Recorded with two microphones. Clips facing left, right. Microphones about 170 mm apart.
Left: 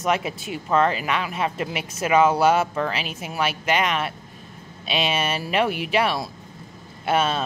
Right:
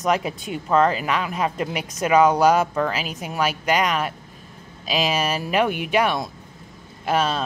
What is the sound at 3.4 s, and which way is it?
A woman's voice, 40° right (ahead or behind).